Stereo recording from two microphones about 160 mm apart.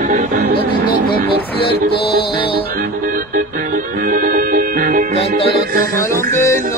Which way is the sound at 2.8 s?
60° right (ahead or behind).